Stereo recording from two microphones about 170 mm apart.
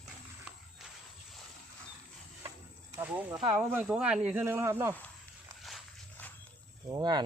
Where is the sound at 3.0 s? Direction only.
10° right (ahead or behind).